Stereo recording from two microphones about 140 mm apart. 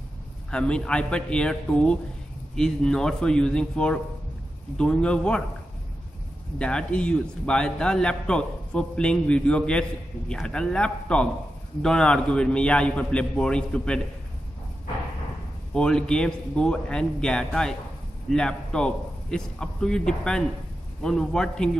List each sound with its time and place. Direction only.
0.5 s a man's voice: 5° left (ahead or behind)
6.6 s a man's voice: 5° left (ahead or behind)
15.7 s a man's voice: 5° left (ahead or behind)